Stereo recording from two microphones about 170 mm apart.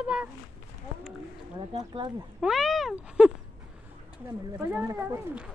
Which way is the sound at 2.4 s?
Centre (ahead or behind).